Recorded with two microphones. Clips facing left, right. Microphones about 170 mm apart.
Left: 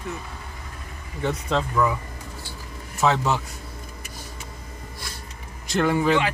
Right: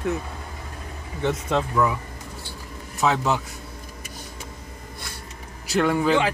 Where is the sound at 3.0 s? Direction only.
Centre (ahead or behind).